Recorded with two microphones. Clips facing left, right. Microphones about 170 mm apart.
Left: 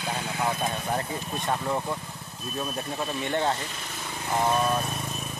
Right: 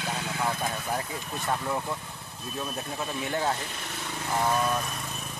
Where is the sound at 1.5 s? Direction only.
5° left (ahead or behind).